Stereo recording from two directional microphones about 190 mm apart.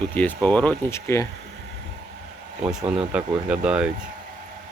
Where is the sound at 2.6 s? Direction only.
5° right (ahead or behind).